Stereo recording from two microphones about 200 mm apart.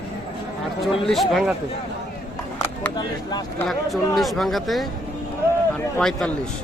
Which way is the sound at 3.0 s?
20° left (ahead or behind).